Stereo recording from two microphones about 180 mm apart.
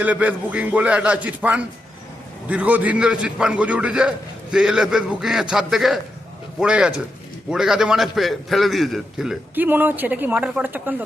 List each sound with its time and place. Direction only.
0.0 s a man's voice: 10° right (ahead or behind)